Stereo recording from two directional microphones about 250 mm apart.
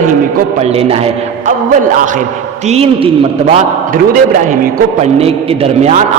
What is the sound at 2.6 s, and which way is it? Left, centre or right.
A man's voice, right.